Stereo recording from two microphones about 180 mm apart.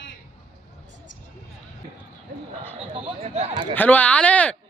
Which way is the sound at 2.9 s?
35° right (ahead or behind).